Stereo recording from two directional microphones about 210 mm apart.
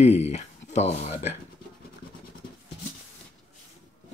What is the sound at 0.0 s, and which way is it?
Speech, 30° left (ahead or behind).